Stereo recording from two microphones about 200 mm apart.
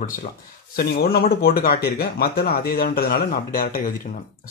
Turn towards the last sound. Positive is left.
turn(degrees=45)  # may be behind; listen again after turning